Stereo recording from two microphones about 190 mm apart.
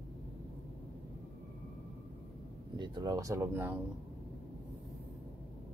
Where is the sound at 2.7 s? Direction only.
25° right (ahead or behind).